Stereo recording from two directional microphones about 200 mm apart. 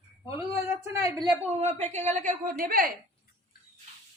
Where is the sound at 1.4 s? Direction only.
30° right (ahead or behind).